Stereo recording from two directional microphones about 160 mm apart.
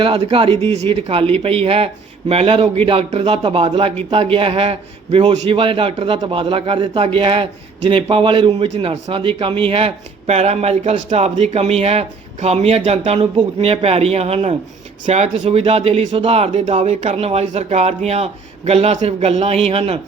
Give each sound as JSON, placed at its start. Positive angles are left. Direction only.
{"t": 0.0, "sound": "speech", "side_deg": -35}